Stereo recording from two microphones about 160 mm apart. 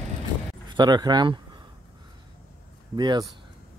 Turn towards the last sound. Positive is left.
turn(degrees=-25)  # may be behind; listen again after turning